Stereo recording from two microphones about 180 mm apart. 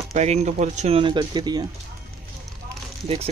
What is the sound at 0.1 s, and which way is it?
Speech, 40° right (ahead or behind).